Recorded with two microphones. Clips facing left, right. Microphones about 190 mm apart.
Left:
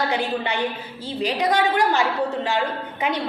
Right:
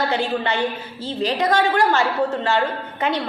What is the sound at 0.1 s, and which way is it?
A woman's voice, 15° left (ahead or behind).